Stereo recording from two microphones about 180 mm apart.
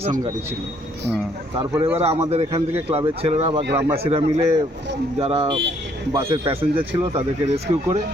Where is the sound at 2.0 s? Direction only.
35° right (ahead or behind).